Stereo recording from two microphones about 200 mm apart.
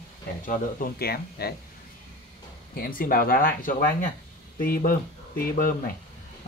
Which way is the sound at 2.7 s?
45° left (ahead or behind).